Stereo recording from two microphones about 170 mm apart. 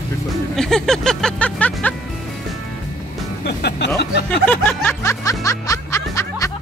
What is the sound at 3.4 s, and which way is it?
Speech, 80° left.